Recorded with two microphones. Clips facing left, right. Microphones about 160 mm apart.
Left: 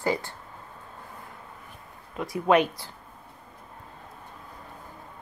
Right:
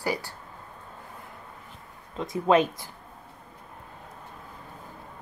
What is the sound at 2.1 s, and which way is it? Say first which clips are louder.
Speech: even; 25° right (ahead or behind).